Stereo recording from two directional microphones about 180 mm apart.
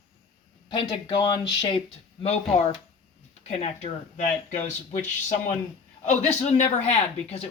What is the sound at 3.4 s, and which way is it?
Speech, 40° left (ahead or behind).